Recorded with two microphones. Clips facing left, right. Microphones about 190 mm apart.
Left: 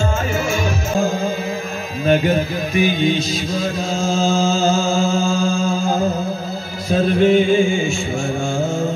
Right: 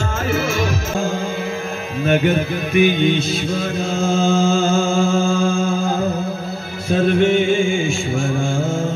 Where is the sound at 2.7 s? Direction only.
60° right (ahead or behind).